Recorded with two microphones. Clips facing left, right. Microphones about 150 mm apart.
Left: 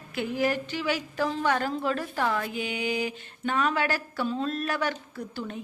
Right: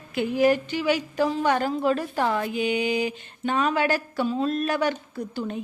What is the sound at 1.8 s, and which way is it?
Speech, 20° right (ahead or behind).